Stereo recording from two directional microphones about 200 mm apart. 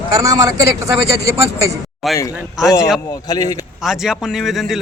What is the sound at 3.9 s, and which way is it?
Speech, centre (ahead or behind).